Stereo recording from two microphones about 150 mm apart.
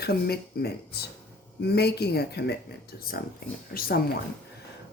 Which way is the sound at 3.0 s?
80° left.